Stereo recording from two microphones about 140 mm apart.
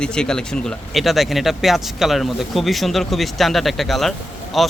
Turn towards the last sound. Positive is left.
turn(degrees=0)  # may be behind; listen again after turning